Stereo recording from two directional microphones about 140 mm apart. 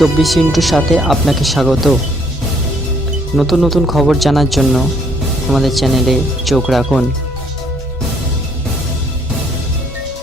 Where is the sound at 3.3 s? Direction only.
Centre (ahead or behind).